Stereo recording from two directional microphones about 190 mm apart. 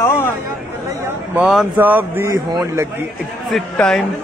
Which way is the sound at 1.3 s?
Centre (ahead or behind).